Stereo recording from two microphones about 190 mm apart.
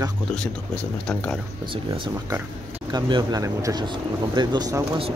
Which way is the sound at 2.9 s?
25° right (ahead or behind).